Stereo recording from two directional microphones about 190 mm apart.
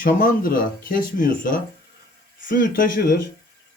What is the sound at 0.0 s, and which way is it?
Speech, 50° left (ahead or behind).